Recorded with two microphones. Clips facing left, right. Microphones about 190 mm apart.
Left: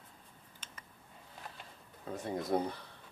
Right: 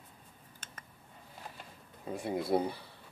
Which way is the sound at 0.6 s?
50° right (ahead or behind).